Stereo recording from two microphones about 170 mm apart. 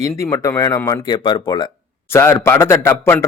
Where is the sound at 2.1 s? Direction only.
15° left (ahead or behind).